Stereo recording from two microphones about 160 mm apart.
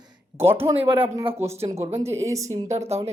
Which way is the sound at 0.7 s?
35° right (ahead or behind).